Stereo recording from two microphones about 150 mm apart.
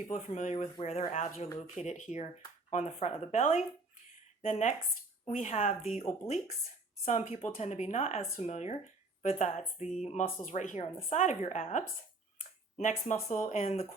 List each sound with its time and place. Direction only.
0.1 s speech: 50° left (ahead or behind)
12.4 s a sound: 55° left (ahead or behind)
13.2 s speech: 50° left (ahead or behind)